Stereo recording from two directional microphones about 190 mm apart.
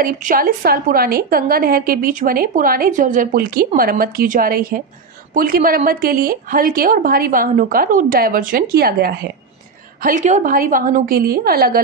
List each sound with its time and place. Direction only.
0.0 s a woman's voice: 50° right (ahead or behind)
10.0 s a woman's voice: 40° right (ahead or behind)